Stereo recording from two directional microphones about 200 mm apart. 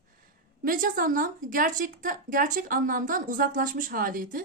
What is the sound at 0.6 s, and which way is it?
A woman's voice, 45° right (ahead or behind).